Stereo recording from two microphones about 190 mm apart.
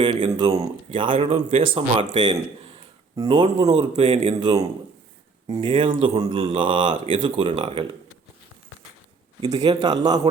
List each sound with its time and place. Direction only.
0.0 s speech: 25° right (ahead or behind)
4.4 s speech: 20° right (ahead or behind)
9.4 s speech: 20° right (ahead or behind)